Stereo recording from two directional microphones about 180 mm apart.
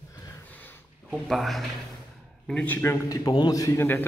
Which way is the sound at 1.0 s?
Centre (ahead or behind).